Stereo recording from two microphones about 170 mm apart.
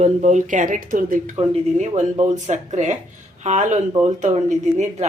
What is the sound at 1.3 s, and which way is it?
A woman's voice, 40° right (ahead or behind).